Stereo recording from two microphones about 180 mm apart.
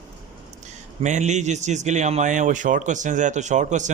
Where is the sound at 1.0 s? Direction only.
40° right (ahead or behind).